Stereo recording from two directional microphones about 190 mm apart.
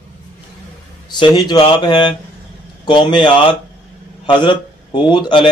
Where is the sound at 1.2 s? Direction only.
25° left (ahead or behind).